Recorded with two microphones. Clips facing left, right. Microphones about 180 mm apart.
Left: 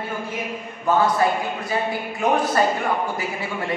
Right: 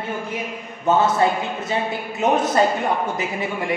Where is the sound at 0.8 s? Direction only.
25° right (ahead or behind).